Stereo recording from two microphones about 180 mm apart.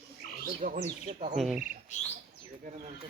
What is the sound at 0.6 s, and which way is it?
Speech, 45° right (ahead or behind).